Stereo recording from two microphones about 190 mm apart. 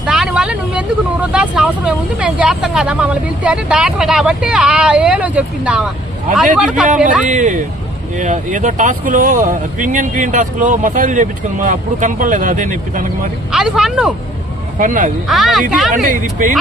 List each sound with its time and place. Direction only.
0.0 s speech: centre (ahead or behind)
7.3 s speech: 40° right (ahead or behind)
13.5 s speech: 5° right (ahead or behind)
14.8 s speech: 45° right (ahead or behind)
15.3 s speech: centre (ahead or behind)